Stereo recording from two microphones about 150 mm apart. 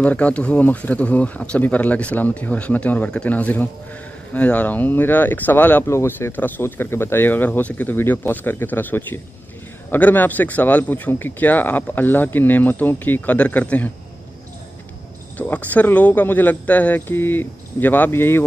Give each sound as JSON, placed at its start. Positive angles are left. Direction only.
{"t": 0.0, "sound": "speech", "side_deg": 10}
{"t": 15.3, "sound": "speech", "side_deg": 10}